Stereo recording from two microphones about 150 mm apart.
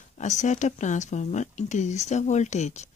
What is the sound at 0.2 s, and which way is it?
Speech, 55° left (ahead or behind).